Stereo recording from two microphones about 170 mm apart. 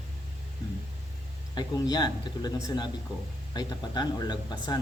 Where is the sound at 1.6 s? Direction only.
25° left (ahead or behind).